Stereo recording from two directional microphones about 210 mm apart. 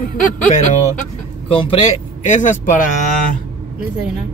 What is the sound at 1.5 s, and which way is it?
Speech, 25° left (ahead or behind).